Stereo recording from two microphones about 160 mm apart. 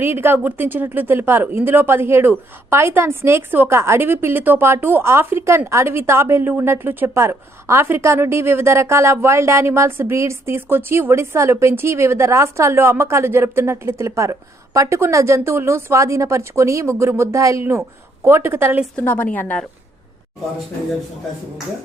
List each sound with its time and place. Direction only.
0.0 s a woman's voice: 15° right (ahead or behind)
18.9 s a woman's voice: 10° left (ahead or behind)